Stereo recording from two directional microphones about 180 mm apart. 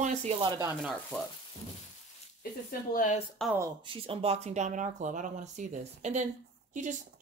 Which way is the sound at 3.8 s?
30° right (ahead or behind).